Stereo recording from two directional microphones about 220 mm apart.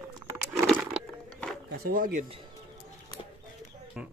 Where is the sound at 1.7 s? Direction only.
40° right (ahead or behind).